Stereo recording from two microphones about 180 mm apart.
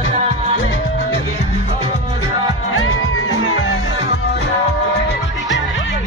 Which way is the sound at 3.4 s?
90° left.